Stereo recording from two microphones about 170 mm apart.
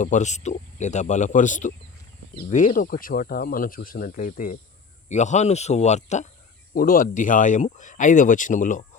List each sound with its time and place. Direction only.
0.0 s speech: 45° left (ahead or behind)
6.7 s speech: 55° left (ahead or behind)